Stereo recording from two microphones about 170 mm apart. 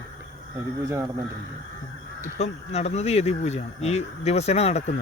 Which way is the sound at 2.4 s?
40° left (ahead or behind).